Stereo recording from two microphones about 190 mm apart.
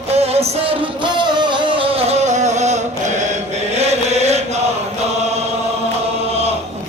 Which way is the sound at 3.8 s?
35° right (ahead or behind).